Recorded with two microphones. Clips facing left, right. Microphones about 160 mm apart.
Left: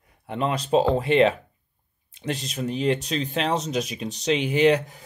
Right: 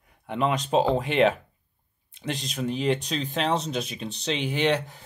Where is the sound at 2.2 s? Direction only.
40° left (ahead or behind).